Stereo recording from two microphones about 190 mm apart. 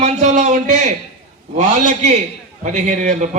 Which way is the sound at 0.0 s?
40° right (ahead or behind).